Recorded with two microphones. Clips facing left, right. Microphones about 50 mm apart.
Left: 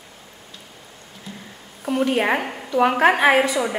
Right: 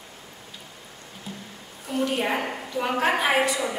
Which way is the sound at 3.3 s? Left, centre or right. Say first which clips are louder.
Left 5 dB; left.